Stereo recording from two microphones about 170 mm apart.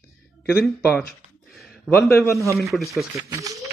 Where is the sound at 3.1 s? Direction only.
20° right (ahead or behind).